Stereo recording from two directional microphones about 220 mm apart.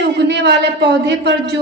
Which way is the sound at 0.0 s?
50° right (ahead or behind).